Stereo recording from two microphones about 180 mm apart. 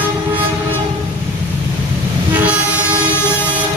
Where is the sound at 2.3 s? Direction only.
5° right (ahead or behind).